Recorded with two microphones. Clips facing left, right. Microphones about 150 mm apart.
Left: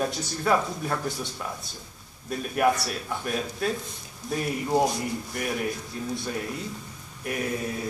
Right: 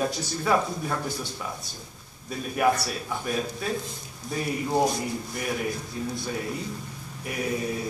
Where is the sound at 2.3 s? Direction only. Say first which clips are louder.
Even; centre (ahead or behind).